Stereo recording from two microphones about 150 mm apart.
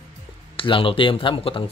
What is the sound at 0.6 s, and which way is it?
Speech, 35° left (ahead or behind).